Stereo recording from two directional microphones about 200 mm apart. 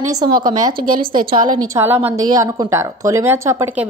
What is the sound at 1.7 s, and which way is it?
Speech, 10° right (ahead or behind).